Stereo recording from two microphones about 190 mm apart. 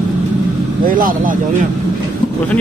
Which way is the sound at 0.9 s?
45° right (ahead or behind).